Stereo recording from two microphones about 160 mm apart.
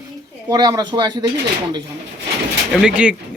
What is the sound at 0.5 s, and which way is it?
Speech, 25° right (ahead or behind).